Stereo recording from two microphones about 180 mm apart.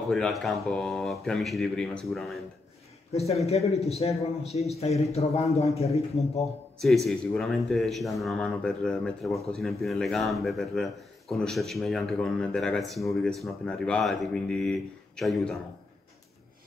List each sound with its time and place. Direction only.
0.1 s speech: centre (ahead or behind)
3.1 s a man's voice: 35° left (ahead or behind)
7.1 s speech: centre (ahead or behind)